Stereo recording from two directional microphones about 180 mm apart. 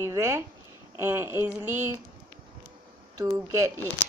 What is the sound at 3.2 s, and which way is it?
Speech, 15° right (ahead or behind).